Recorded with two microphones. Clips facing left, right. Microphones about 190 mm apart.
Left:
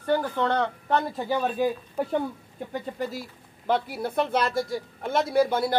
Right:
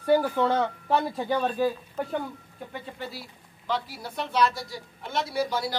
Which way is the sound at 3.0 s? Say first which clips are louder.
Left 6 dB; 45° left (ahead or behind).